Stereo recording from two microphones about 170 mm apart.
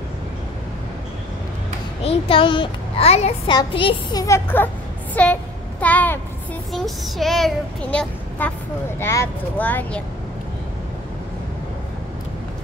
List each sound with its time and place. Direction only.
2.0 s a child's voice: 35° left (ahead or behind)
3.5 s a child's voice: 25° left (ahead or behind); by 10.0 s 10° left (ahead or behind)